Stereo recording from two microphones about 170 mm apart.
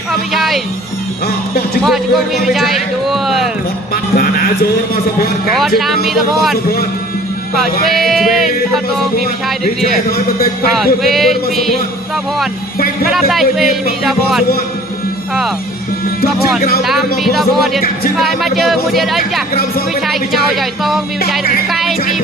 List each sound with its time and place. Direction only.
0.3 s music: centre (ahead or behind)
1.2 s speech: 65° left (ahead or behind)
1.9 s speech: centre (ahead or behind)
3.9 s speech: 60° left (ahead or behind)
5.6 s speech: centre (ahead or behind)
7.9 s speech: centre (ahead or behind)
10.8 s speech: centre (ahead or behind)
13.1 s speech: centre (ahead or behind)
17.2 s speech: centre (ahead or behind)
21.3 s speech: centre (ahead or behind)